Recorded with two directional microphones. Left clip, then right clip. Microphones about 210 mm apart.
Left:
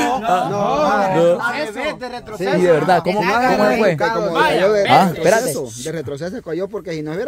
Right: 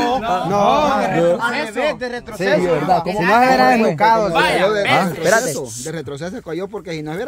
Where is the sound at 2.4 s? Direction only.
45° right (ahead or behind).